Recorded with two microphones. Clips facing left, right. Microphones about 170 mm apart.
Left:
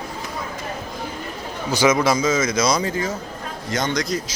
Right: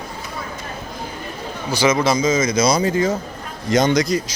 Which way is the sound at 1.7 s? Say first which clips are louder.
Even; 20° left (ahead or behind).